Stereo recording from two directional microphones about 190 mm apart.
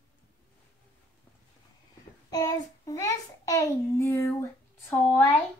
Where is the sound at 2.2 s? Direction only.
20° left (ahead or behind).